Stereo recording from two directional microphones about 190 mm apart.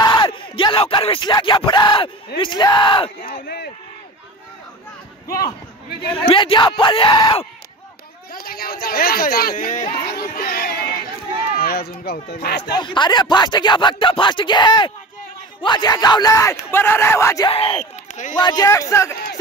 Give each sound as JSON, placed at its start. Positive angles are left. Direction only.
{"t": 0.0, "sound": "speech", "side_deg": 20}
{"t": 3.2, "sound": "a sound", "side_deg": 55}
{"t": 6.1, "sound": "speech", "side_deg": 25}
{"t": 8.3, "sound": "speech", "side_deg": 50}
{"t": 10.1, "sound": "crowd", "side_deg": 50}
{"t": 11.5, "sound": "speech", "side_deg": 50}
{"t": 12.7, "sound": "speech", "side_deg": 25}
{"t": 17.5, "sound": "speech", "side_deg": 30}
{"t": 18.3, "sound": "speech", "side_deg": 20}